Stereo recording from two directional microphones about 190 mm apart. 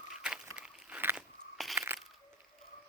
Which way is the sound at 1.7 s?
10° right (ahead or behind).